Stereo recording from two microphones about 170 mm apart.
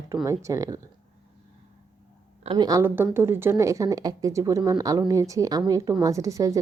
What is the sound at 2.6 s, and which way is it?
Speech, 15° right (ahead or behind).